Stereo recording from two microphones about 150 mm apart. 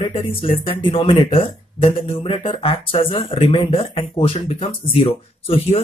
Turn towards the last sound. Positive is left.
turn(degrees=40)  # may be behind; listen again after turning